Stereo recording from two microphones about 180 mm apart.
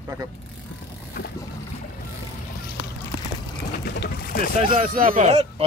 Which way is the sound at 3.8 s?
60° left (ahead or behind).